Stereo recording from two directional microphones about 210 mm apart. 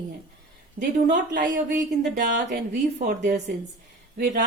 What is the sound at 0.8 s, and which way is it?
Speech, 45° right (ahead or behind).